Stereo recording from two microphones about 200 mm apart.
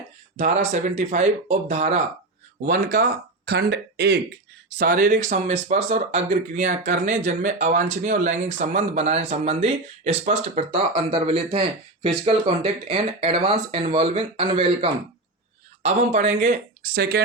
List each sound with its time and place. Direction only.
0.3 s speech: 40° right (ahead or behind)
2.6 s speech: 45° right (ahead or behind)